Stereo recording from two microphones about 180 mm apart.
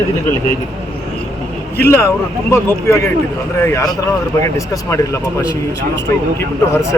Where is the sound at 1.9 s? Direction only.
15° left (ahead or behind).